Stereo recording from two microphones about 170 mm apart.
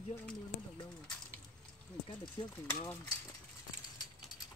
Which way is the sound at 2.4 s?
30° left (ahead or behind).